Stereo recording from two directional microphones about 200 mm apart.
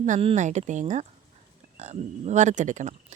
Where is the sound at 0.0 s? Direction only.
40° right (ahead or behind).